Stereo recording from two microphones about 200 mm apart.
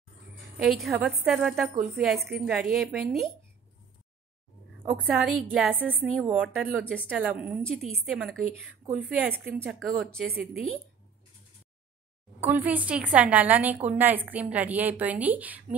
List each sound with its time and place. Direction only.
0.6 s a woman's voice: centre (ahead or behind)
4.9 s a woman's voice: centre (ahead or behind)
12.4 s a woman's voice: 10° right (ahead or behind)